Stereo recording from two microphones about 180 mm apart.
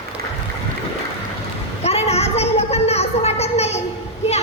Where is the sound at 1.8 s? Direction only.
35° left (ahead or behind).